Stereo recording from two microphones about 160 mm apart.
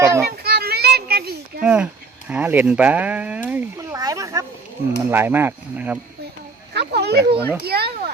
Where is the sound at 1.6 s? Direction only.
5° right (ahead or behind).